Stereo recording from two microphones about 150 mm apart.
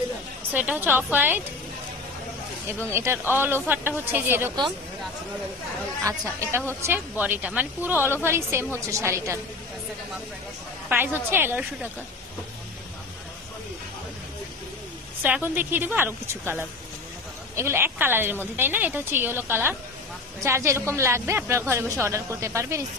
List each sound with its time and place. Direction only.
0.5 s a woman's voice: 10° right (ahead or behind)
2.9 s a woman's voice: 15° right (ahead or behind)
6.0 s a woman's voice: 20° right (ahead or behind)
11.2 s a woman's voice: 15° right (ahead or behind)
15.2 s a woman's voice: 10° right (ahead or behind)